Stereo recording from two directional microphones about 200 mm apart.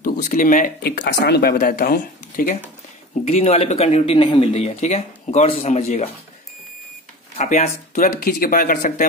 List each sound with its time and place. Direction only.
0.0 s speech: 40° left (ahead or behind)
3.3 s speech: 30° left (ahead or behind)
7.3 s speech: 35° left (ahead or behind)